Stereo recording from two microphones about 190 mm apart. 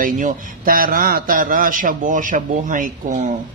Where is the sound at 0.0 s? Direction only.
45° right (ahead or behind).